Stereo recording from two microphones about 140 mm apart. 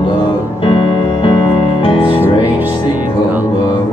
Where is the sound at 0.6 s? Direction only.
35° left (ahead or behind).